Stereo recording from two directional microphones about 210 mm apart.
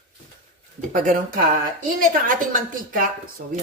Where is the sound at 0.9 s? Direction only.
40° right (ahead or behind).